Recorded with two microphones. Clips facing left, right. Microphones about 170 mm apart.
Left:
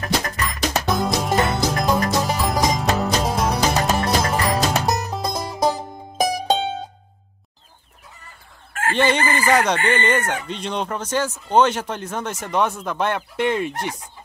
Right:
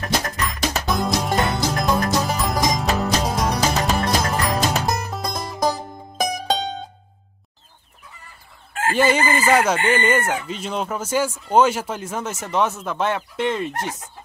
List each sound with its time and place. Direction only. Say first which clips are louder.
0.0 s music: even; centre (ahead or behind)
5.3 s music: left 1 dB; 20° left (ahead or behind)
8.9 s chicken: right 1 dB; 5° right (ahead or behind)
9.8 s speech: right 1 dB; 5° right (ahead or behind)